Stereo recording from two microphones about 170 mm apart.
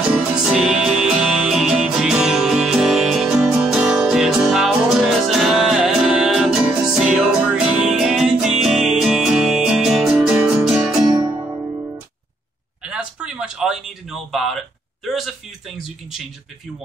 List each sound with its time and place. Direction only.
0.1 s music: centre (ahead or behind)
11.1 s music: 25° right (ahead or behind)
12.8 s a sound: 5° right (ahead or behind)